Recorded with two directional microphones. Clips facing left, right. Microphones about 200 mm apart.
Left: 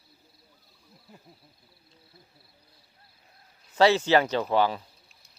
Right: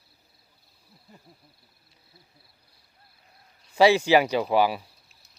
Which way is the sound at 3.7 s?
10° right (ahead or behind).